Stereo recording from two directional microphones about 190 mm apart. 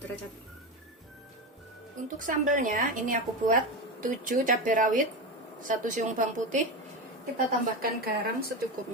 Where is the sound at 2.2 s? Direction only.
45° right (ahead or behind).